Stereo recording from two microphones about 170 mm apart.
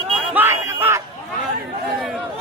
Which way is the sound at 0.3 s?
15° right (ahead or behind).